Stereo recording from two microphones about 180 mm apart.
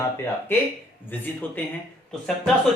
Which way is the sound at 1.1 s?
10° left (ahead or behind).